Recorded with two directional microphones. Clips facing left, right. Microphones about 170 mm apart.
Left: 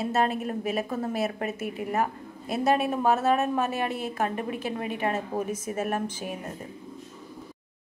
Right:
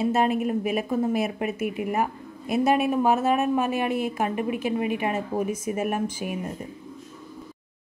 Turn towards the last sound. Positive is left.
turn(degrees=-10)  # may be behind; listen again after turning